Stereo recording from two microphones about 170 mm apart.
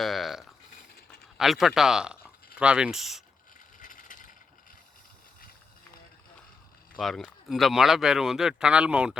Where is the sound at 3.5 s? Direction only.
50° left (ahead or behind).